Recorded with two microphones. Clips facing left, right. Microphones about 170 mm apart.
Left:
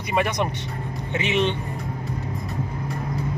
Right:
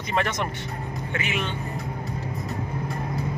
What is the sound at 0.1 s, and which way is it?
Speech, 15° left (ahead or behind).